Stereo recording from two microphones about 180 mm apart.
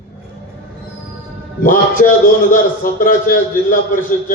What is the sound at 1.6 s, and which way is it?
A man's voice, 50° left (ahead or behind).